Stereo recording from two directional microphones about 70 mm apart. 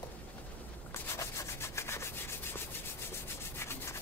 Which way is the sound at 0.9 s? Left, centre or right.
Left.